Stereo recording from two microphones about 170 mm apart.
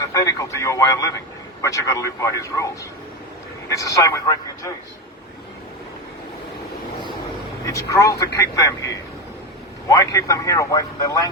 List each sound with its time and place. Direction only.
0.0 s speech: 20° left (ahead or behind)
3.7 s speech: 20° left (ahead or behind)
7.6 s speech: 20° left (ahead or behind)